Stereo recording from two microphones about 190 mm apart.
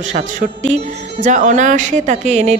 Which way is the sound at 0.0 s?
40° right (ahead or behind).